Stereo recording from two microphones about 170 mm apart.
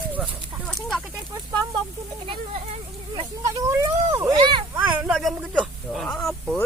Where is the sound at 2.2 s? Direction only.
30° right (ahead or behind).